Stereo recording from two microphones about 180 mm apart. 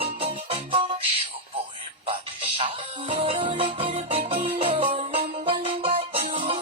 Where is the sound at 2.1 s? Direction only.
30° right (ahead or behind).